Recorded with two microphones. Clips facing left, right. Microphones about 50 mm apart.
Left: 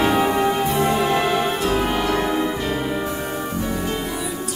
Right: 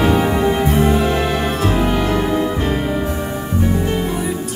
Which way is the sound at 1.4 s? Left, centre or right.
Right.